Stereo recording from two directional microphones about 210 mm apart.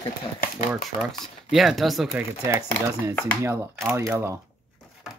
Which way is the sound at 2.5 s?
15° right (ahead or behind).